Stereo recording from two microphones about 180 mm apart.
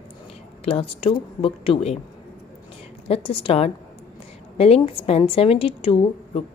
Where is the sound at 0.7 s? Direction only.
30° left (ahead or behind).